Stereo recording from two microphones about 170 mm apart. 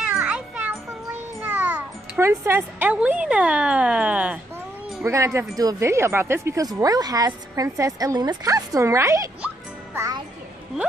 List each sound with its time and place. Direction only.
0.1 s music: 10° right (ahead or behind)
1.4 s a child's voice: 10° right (ahead or behind)
9.9 s music: 20° right (ahead or behind)